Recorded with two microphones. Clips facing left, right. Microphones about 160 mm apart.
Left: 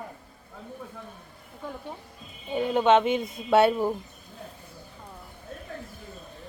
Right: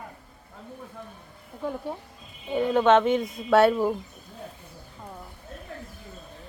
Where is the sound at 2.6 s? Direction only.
20° left (ahead or behind).